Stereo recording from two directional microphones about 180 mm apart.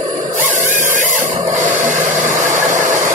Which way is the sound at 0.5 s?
45° right (ahead or behind).